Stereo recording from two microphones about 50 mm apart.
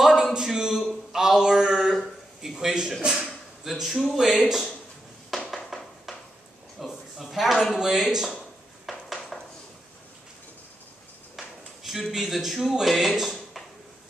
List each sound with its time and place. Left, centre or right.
0.1 s a sound: centre
1.1 s mantra: centre
2.4 s a man's voice: centre
3.6 s speech: centre
5.3 s a sound: centre
6.8 s speech: centre
8.8 s dishes: centre
11.3 s speech: centre